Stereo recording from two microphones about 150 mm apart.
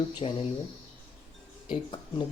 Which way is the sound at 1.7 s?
30° left (ahead or behind).